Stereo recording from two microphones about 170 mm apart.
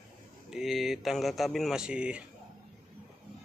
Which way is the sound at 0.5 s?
Centre (ahead or behind).